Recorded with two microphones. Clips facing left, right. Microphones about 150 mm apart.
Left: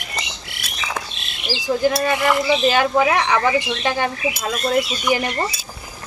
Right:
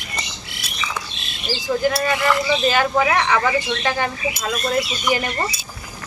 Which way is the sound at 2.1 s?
15° left (ahead or behind).